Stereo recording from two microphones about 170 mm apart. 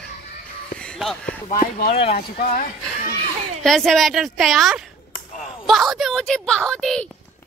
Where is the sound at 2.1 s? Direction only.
60° left (ahead or behind).